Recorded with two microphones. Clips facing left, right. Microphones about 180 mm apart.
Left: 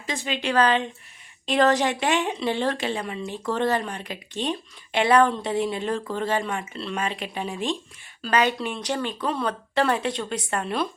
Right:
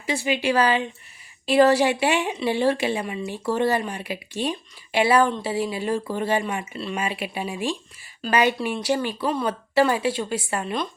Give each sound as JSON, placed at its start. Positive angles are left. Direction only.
{"t": 0.0, "sound": "speech", "side_deg": -10}